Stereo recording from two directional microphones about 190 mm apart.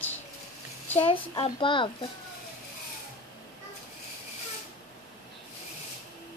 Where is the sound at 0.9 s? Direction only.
30° left (ahead or behind).